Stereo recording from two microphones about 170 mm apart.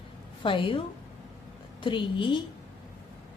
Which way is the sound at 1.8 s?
30° left (ahead or behind).